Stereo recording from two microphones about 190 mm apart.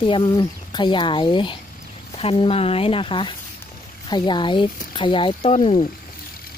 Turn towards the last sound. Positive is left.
turn(degrees=35)  # may be behind; listen again after turning